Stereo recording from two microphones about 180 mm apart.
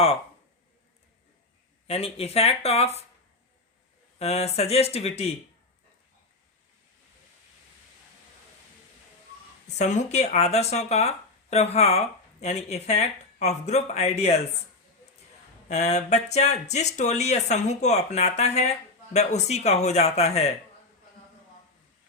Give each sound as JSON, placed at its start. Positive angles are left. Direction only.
{"t": 1.9, "sound": "speech", "side_deg": 35}
{"t": 4.2, "sound": "speech", "side_deg": 35}
{"t": 9.7, "sound": "speech", "side_deg": 40}
{"t": 15.7, "sound": "speech", "side_deg": 40}